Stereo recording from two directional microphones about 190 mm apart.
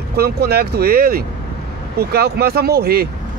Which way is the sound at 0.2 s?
55° right (ahead or behind).